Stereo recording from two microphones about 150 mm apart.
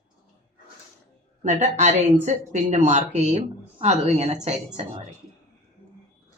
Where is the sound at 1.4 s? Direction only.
50° right (ahead or behind).